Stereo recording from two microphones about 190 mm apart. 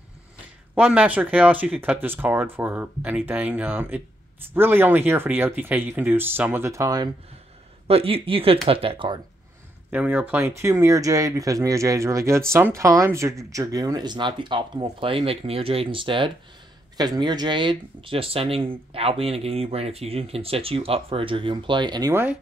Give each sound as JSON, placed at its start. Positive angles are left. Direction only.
{"t": 0.7, "sound": "speech", "side_deg": -5}
{"t": 7.8, "sound": "speech", "side_deg": -30}
{"t": 9.8, "sound": "speech", "side_deg": -10}
{"t": 22.1, "sound": "speech", "side_deg": -10}